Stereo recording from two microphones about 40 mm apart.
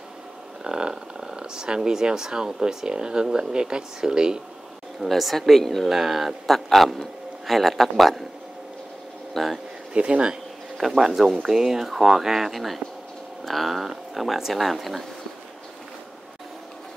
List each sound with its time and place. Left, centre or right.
0.7 s a sound: centre
1.3 s purr: centre
1.8 s speech: centre
5.0 s speech: centre
5.9 s speech: centre
6.4 s speech: centre
9.3 s speech: centre
9.9 s speech: right
10.8 s speech: centre